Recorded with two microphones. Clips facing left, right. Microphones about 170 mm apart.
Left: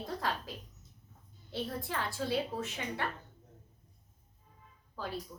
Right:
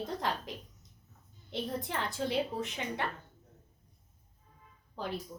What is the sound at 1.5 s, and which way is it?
A woman's voice, 20° right (ahead or behind).